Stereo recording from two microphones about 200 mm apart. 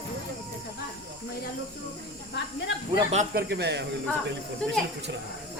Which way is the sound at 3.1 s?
35° right (ahead or behind).